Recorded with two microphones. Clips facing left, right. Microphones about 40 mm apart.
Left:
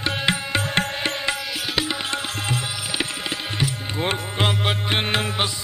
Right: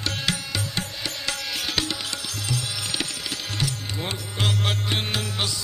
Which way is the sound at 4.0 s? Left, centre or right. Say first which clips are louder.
Left 6 dB; left.